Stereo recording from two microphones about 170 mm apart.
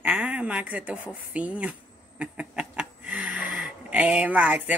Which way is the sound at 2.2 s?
5° right (ahead or behind).